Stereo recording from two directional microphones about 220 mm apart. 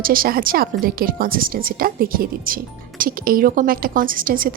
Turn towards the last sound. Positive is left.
turn(degrees=-40)  # may be behind; listen again after turning